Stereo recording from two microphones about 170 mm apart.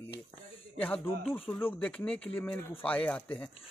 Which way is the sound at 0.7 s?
10° left (ahead or behind).